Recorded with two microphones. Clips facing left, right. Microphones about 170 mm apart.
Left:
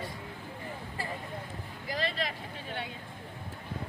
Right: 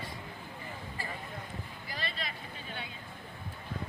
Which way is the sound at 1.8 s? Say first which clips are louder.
Left 8 dB; 90° left.